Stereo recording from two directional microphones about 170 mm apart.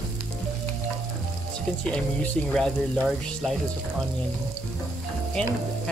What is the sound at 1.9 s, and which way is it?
Speech, 5° left (ahead or behind).